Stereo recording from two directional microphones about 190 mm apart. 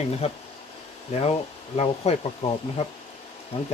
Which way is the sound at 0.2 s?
35° left (ahead or behind).